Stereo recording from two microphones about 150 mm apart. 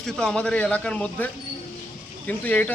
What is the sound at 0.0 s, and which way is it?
Speech, 5° left (ahead or behind).